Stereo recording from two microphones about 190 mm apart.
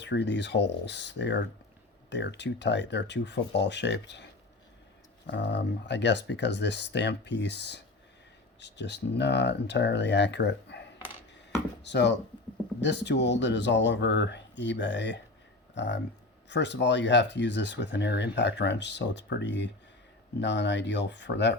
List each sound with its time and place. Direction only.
0.0 s speech: 65° left (ahead or behind)